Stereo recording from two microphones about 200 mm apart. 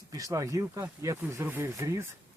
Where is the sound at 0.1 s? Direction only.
15° right (ahead or behind).